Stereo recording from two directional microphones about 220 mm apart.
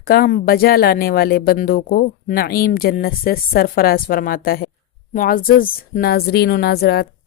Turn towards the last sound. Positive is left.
turn(degrees=45)  # may be behind; listen again after turning